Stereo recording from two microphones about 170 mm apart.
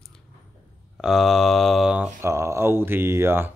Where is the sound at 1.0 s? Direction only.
Centre (ahead or behind).